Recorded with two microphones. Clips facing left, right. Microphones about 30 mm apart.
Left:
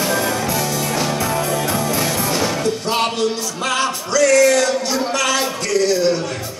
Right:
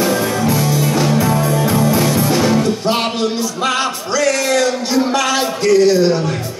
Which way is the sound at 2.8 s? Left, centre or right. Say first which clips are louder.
Right 2 dB; right.